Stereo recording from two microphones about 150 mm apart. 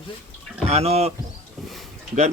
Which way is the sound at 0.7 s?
45° right (ahead or behind).